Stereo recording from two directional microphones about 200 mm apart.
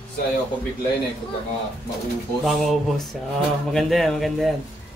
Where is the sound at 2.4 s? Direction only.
Centre (ahead or behind).